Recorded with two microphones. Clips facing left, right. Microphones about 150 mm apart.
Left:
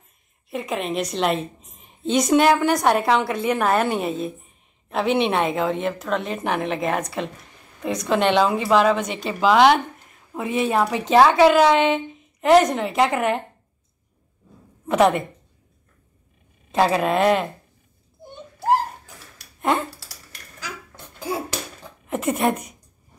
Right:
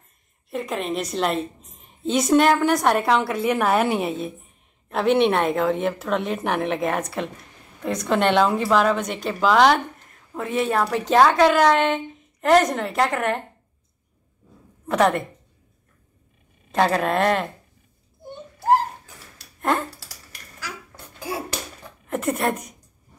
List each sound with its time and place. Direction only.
0.5 s a woman's voice: centre (ahead or behind)
14.9 s a woman's voice: 5° left (ahead or behind)
16.7 s a woman's voice: 5° left (ahead or behind)
19.6 s speech: centre (ahead or behind)
20.6 s dishes: 20° left (ahead or behind)
22.0 s speech: 5° left (ahead or behind)